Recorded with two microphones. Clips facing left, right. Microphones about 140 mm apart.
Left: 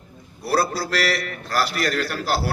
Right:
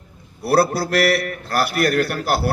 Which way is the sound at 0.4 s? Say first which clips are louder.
Right 5 dB; 60° right (ahead or behind).